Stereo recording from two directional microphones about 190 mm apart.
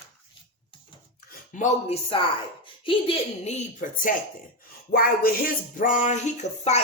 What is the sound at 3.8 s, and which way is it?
Speech, 45° left (ahead or behind).